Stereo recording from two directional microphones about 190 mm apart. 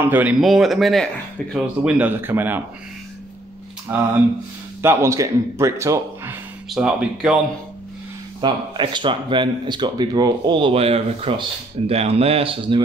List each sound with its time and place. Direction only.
0.0 s a man's voice: 10° right (ahead or behind)
3.9 s a man's voice: 10° right (ahead or behind)
6.7 s speech: centre (ahead or behind)
8.4 s speech: 25° right (ahead or behind)